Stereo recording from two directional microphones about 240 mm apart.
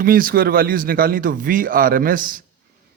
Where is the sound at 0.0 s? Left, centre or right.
Right.